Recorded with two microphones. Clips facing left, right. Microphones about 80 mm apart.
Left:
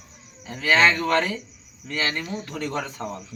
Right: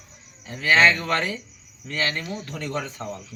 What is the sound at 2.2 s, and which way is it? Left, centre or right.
Speech, left.